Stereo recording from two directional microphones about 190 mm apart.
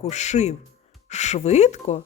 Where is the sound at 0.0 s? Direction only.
35° left (ahead or behind).